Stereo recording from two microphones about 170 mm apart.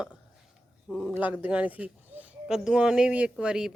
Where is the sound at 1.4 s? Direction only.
10° right (ahead or behind).